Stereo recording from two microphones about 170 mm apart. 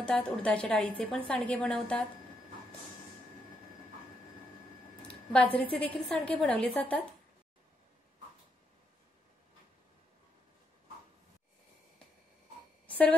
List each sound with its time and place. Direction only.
0.0 s a woman's voice: 5° left (ahead or behind)
5.0 s a woman's voice: 10° left (ahead or behind)
12.8 s a sound: 10° left (ahead or behind)